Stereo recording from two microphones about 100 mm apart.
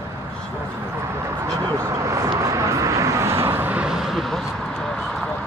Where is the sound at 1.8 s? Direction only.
30° right (ahead or behind).